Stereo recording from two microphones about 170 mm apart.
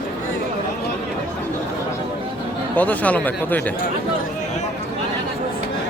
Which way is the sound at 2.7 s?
10° left (ahead or behind).